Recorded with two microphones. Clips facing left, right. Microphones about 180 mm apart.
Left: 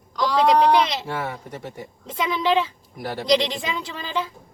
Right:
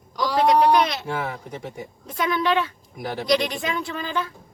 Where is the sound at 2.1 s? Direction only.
25° left (ahead or behind).